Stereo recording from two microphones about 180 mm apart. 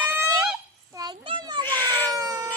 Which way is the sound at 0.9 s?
25° right (ahead or behind).